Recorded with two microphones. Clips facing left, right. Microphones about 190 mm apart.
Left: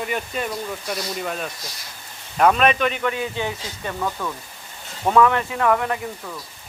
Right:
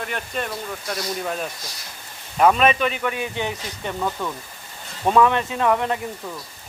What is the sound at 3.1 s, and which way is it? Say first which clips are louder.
Speech: left 1 dB; 20° right (ahead or behind).